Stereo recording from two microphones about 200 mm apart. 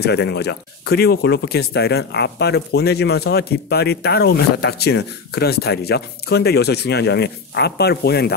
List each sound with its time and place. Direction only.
0.0 s speech: 55° left (ahead or behind)